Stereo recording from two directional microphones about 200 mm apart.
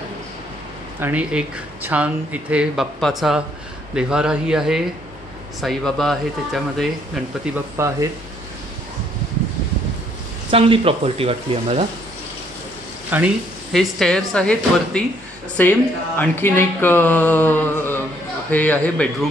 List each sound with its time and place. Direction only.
1.0 s speech: 10° right (ahead or behind)
7.7 s speech: 15° right (ahead or behind)
10.5 s speech: 25° right (ahead or behind)
13.1 s speech: 5° right (ahead or behind)
15.6 s a sound: 10° left (ahead or behind)